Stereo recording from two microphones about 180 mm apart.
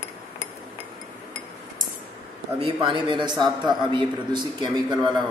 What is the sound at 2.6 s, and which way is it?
A man's voice, 25° right (ahead or behind).